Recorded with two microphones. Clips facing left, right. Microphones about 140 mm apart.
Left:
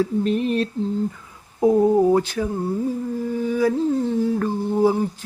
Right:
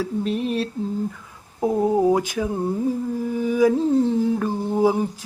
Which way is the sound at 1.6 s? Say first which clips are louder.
Left 3 dB; 10° right (ahead or behind).